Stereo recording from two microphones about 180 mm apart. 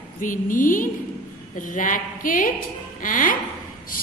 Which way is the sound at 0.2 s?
50° left (ahead or behind).